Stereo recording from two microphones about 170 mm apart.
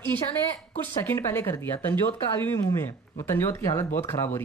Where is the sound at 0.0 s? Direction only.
10° left (ahead or behind).